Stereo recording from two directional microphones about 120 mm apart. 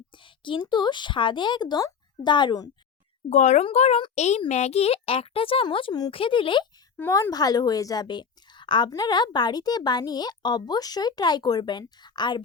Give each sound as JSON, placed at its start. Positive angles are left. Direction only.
{"t": 0.4, "sound": "a woman's voice", "side_deg": 40}
{"t": 3.2, "sound": "a child's voice", "side_deg": 75}
{"t": 3.6, "sound": "a child's voice", "side_deg": 60}
{"t": 7.1, "sound": "a woman's voice", "side_deg": 30}